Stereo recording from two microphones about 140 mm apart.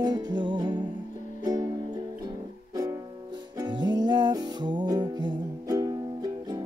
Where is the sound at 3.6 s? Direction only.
30° right (ahead or behind).